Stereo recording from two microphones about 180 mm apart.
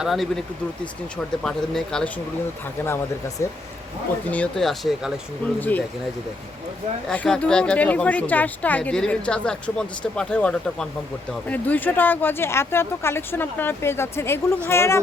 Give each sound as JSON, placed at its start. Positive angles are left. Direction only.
{"t": 0.0, "sound": "speech", "side_deg": 0}
{"t": 1.5, "sound": "speech", "side_deg": 5}
{"t": 2.8, "sound": "speech", "side_deg": 15}
{"t": 4.3, "sound": "speech", "side_deg": 5}
{"t": 5.5, "sound": "speech", "side_deg": 10}
{"t": 7.1, "sound": "speech", "side_deg": 5}